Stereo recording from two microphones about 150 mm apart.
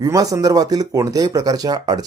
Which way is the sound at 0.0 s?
25° right (ahead or behind).